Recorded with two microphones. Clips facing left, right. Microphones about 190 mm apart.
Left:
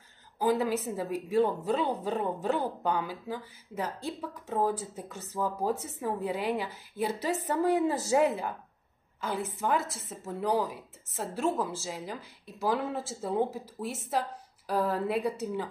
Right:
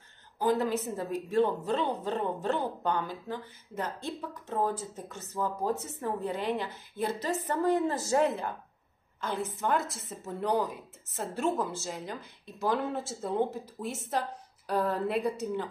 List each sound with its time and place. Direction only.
0.4 s a woman's voice: 5° left (ahead or behind)